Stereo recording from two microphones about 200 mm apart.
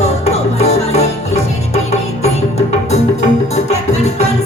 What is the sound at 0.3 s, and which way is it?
Music, 30° left (ahead or behind).